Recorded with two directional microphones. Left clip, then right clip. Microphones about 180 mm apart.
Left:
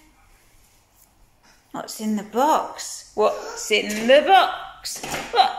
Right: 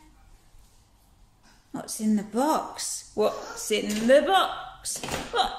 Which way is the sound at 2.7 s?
30° right (ahead or behind).